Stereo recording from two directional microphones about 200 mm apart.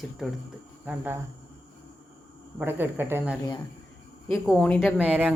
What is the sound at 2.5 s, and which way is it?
Speech, 10° right (ahead or behind).